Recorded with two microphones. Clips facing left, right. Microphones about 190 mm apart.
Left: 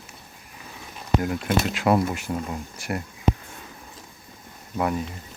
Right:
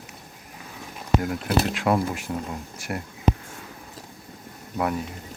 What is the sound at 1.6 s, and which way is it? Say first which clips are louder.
Speech: left 2 dB; centre (ahead or behind).